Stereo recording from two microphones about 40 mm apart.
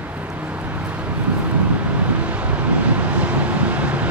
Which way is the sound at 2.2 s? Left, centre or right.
Right.